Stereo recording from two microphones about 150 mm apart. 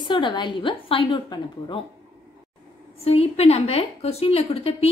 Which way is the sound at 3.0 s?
40° left (ahead or behind).